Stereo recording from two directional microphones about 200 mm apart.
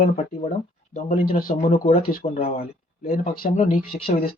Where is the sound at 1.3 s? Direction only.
45° left (ahead or behind).